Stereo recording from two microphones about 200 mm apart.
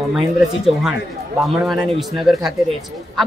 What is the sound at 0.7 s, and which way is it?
Speech, centre (ahead or behind).